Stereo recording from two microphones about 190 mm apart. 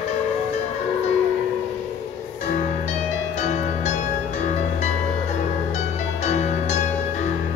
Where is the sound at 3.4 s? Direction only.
35° left (ahead or behind).